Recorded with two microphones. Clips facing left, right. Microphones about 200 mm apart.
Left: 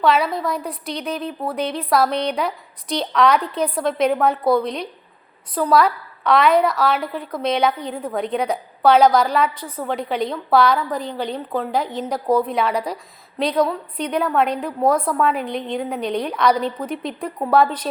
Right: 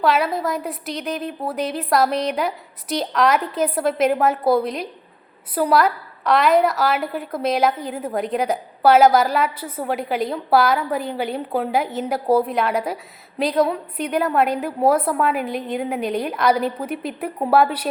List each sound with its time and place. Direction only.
0.0 s a woman's voice: centre (ahead or behind)
11.7 s a woman's voice: 5° right (ahead or behind)